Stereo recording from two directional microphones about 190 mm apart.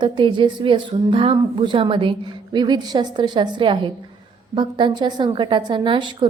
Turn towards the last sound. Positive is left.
turn(degrees=-25)  # may be behind; listen again after turning